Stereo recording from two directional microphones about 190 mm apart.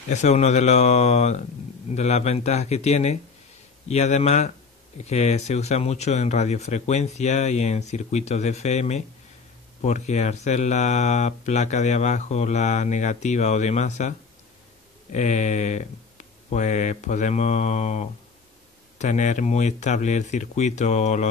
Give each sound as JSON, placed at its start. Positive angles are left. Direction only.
{"t": 0.1, "sound": "speech", "side_deg": 35}
{"t": 15.1, "sound": "speech", "side_deg": 40}